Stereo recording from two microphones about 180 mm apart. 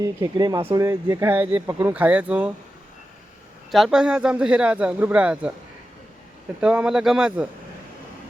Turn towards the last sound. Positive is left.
turn(degrees=-5)  # may be behind; listen again after turning